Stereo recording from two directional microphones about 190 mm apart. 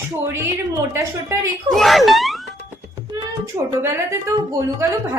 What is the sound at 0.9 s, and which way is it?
Speech, 15° right (ahead or behind).